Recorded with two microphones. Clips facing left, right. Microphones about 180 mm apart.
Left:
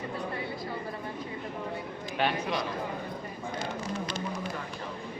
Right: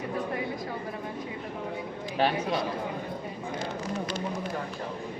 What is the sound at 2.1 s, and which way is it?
Speech, 35° right (ahead or behind).